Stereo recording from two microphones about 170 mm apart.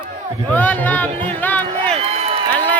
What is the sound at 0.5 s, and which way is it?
Speech, 10° left (ahead or behind).